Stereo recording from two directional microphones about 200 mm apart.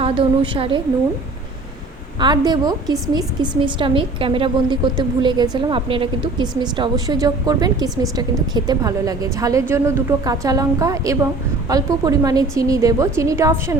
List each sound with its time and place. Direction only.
0.0 s a woman's voice: 30° right (ahead or behind)
2.1 s a woman's voice: 20° right (ahead or behind)